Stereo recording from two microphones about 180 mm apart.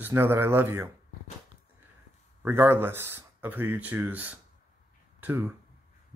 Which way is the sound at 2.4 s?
15° right (ahead or behind).